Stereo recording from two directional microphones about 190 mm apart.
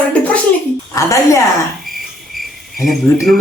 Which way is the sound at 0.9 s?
15° left (ahead or behind).